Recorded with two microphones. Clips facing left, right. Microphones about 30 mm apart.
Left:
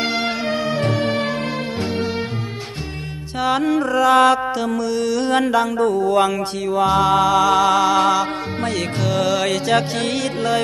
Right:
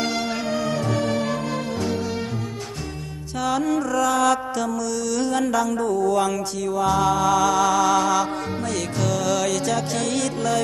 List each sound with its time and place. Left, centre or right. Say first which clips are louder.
0.0 s music: left 4 dB; left
3.4 s music: left 4 dB; left
4.6 s mantra: left 6 dB; left